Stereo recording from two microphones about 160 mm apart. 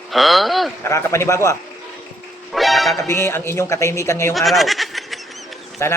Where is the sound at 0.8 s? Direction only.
20° left (ahead or behind).